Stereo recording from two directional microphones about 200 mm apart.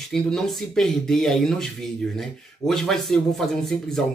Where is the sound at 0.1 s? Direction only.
Centre (ahead or behind).